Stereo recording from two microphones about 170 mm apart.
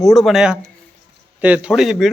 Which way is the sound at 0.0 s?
Centre (ahead or behind).